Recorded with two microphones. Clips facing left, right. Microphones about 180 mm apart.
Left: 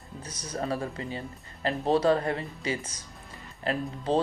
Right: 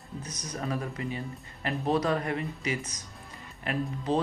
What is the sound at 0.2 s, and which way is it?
Speech, 30° left (ahead or behind).